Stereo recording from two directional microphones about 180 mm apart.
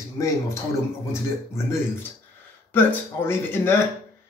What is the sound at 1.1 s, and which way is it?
Speech, 15° left (ahead or behind).